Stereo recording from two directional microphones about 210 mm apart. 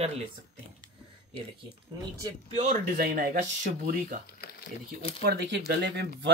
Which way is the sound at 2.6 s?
40° right (ahead or behind).